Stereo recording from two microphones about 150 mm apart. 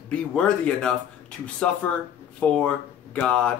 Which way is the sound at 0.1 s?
5° left (ahead or behind).